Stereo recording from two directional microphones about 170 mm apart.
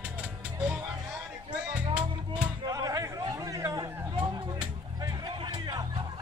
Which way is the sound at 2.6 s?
20° right (ahead or behind).